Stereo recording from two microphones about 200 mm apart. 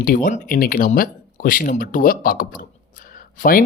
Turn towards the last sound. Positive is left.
turn(degrees=45)  # may be behind; listen again after turning